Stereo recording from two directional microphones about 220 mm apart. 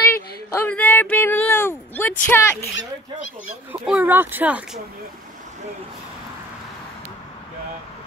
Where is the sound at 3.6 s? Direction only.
5° right (ahead or behind).